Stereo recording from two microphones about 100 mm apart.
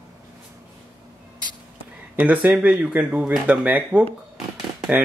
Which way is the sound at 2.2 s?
15° right (ahead or behind).